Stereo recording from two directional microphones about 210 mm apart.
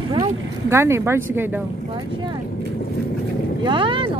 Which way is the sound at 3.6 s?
20° right (ahead or behind).